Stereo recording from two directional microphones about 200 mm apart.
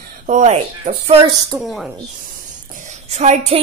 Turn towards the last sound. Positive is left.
turn(degrees=-35)  # may be behind; listen again after turning